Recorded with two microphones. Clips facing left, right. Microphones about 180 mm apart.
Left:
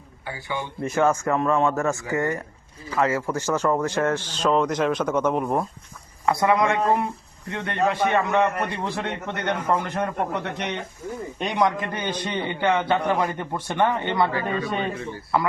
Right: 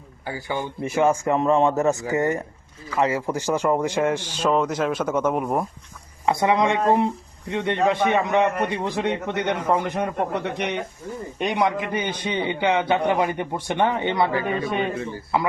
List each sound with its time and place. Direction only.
0.3 s speech: 40° right (ahead or behind)
0.8 s speech: 15° right (ahead or behind)
6.2 s speech: 25° right (ahead or behind)